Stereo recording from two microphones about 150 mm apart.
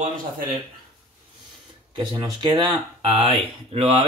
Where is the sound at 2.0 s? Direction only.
30° right (ahead or behind).